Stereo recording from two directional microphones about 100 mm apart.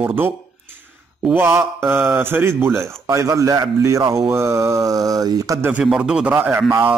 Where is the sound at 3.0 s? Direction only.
30° right (ahead or behind).